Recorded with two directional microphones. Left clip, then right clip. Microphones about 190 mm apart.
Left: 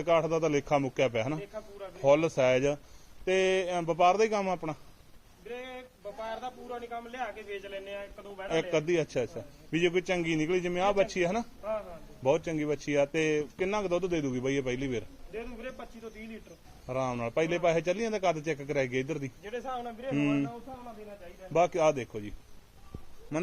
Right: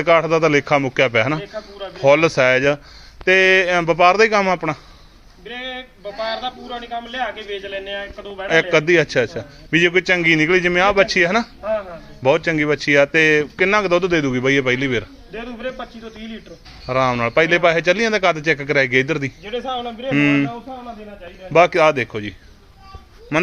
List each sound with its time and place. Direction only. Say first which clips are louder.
0.0 s a man's voice: right 12 dB; 5° left (ahead or behind)
5.5 s a man's voice: right 12 dB; 15° left (ahead or behind)
6.9 s a man's voice: right 15 dB; 15° left (ahead or behind)
8.4 s a man's voice: right 14 dB; 5° left (ahead or behind)
16.9 s a man's voice: right 15 dB; 5° left (ahead or behind)
21.5 s a man's voice: right 13 dB; 5° left (ahead or behind)